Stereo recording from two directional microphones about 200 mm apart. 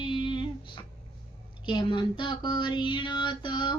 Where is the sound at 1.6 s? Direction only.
25° left (ahead or behind).